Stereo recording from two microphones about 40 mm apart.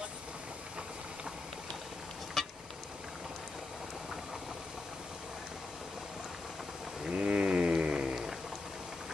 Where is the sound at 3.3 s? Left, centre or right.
Centre.